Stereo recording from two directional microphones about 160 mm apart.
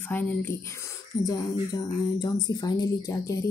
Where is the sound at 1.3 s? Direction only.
25° left (ahead or behind).